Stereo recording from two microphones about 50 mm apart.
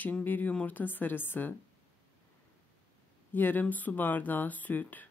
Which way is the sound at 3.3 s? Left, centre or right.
Left.